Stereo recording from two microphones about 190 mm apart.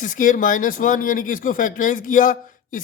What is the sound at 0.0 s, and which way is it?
Speech, 45° left (ahead or behind).